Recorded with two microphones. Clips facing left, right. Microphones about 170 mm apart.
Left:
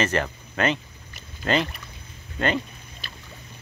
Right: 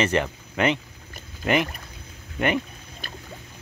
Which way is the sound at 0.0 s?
15° right (ahead or behind).